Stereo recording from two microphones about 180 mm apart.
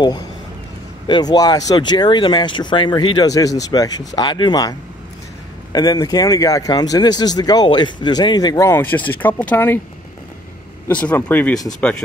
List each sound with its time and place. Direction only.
1.0 s speech: 25° left (ahead or behind)
10.9 s speech: 10° left (ahead or behind)